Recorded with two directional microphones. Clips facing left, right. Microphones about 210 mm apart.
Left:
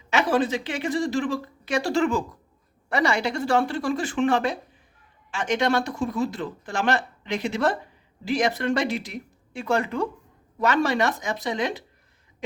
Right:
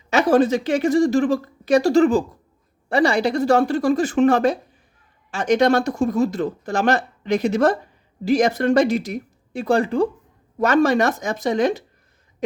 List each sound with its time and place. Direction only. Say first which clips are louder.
0.1 s a woman's voice: right 6 dB; 45° right (ahead or behind)
10.6 s speech: right 6 dB; 45° right (ahead or behind)